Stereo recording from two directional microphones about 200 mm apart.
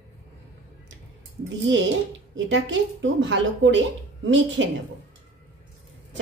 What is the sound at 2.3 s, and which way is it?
A woman's voice, 70° right (ahead or behind).